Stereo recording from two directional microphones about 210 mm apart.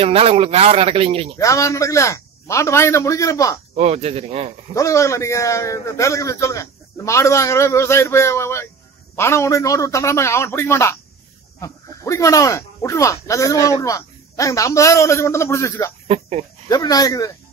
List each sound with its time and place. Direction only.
0.0 s a man's voice: 30° right (ahead or behind)
1.4 s speech: 15° left (ahead or behind)
3.7 s a man's voice: 30° right (ahead or behind)
4.7 s speech: 15° left (ahead or behind)
16.1 s speech: 30° right (ahead or behind)
16.6 s speech: 15° left (ahead or behind)